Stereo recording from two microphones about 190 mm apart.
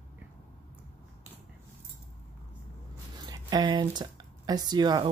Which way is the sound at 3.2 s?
20° right (ahead or behind).